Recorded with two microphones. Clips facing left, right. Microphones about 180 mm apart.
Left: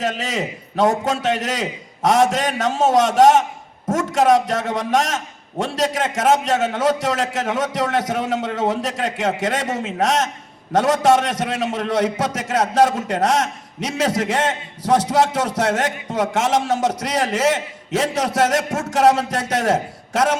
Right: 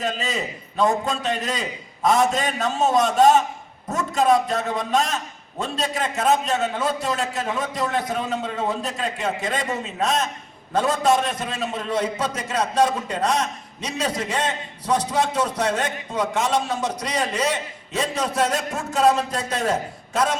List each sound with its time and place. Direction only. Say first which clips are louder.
0.0 s a man's voice: left 3 dB; 80° left